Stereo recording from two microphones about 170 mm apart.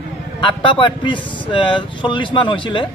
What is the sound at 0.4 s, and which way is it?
Speech, 30° left (ahead or behind).